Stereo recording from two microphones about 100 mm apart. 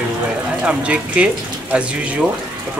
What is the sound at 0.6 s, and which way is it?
Speech, 10° right (ahead or behind).